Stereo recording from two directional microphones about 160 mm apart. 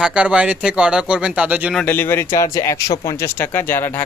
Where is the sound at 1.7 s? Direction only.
10° left (ahead or behind).